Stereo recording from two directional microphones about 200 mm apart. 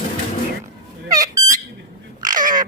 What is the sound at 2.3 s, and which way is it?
Dog, 40° right (ahead or behind).